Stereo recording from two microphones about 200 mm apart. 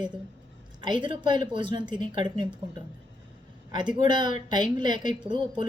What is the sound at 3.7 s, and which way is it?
A woman's voice, 20° right (ahead or behind).